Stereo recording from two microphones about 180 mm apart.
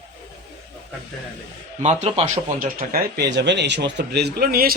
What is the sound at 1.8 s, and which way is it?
Speech, 40° right (ahead or behind).